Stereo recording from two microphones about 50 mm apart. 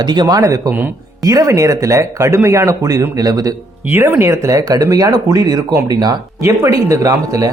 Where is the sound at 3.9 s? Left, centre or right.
Right.